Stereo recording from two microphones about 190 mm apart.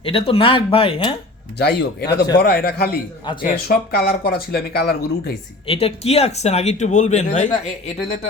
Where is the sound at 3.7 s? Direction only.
50° left (ahead or behind).